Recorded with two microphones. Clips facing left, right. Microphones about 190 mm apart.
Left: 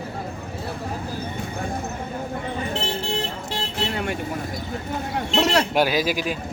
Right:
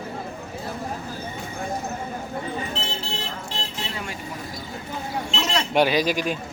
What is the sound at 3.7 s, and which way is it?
Vehicle, 60° left (ahead or behind).